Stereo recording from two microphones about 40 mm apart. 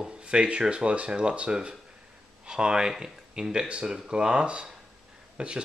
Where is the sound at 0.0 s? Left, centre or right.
Right.